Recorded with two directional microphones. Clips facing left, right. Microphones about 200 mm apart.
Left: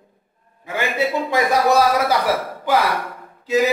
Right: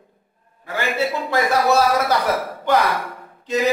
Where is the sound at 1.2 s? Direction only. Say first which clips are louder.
Even; 15° left (ahead or behind).